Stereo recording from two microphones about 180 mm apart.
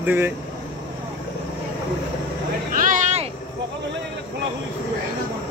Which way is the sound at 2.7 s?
45° right (ahead or behind).